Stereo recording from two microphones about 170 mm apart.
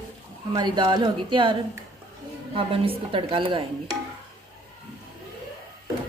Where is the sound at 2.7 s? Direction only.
30° right (ahead or behind).